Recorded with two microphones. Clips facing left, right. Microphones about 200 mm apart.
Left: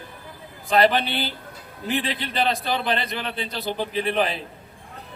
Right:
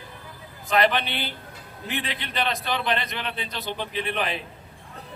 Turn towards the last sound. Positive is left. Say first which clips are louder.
# left 5 dB
turn(degrees=35)  # may be behind; listen again after turning